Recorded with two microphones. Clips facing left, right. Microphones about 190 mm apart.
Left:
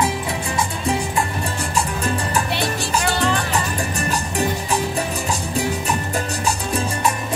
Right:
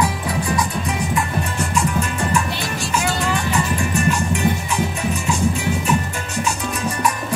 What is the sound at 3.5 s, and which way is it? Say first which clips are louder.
Music: right 3 dB; 35° left (ahead or behind).